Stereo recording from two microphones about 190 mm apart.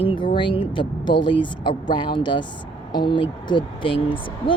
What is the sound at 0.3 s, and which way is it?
A woman's voice, 25° left (ahead or behind).